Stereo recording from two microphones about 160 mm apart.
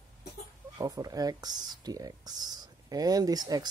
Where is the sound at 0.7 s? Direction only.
25° right (ahead or behind).